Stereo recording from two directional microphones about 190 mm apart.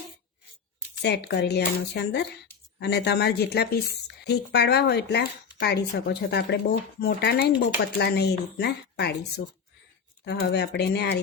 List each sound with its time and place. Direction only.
1.0 s a woman's voice: 65° left (ahead or behind)
10.2 s a woman's voice: 60° left (ahead or behind)